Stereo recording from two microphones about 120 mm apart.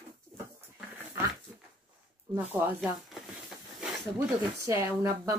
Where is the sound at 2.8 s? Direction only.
5° right (ahead or behind).